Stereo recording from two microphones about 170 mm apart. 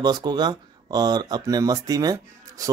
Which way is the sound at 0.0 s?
25° right (ahead or behind).